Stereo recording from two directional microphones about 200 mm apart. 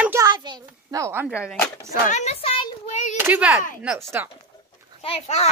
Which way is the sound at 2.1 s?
35° left (ahead or behind).